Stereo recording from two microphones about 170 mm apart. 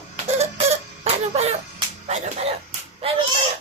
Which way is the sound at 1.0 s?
35° right (ahead or behind).